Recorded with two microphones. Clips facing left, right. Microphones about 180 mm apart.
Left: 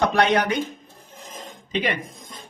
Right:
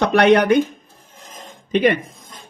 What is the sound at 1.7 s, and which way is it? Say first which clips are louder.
Speech: right 9 dB; 55° right (ahead or behind).